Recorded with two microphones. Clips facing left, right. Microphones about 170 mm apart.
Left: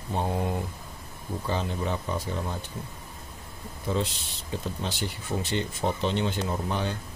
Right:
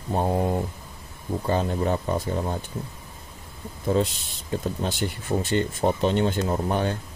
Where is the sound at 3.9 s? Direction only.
50° right (ahead or behind).